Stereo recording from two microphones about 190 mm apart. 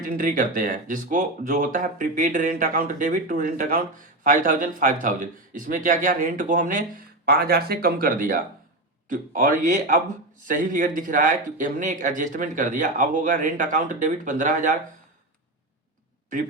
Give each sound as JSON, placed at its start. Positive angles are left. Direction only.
{"t": 0.0, "sound": "speech", "side_deg": -45}